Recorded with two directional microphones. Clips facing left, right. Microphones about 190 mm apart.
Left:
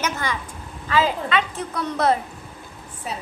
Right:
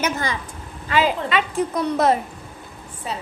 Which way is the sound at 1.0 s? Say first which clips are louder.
Right 1 dB; 10° right (ahead or behind).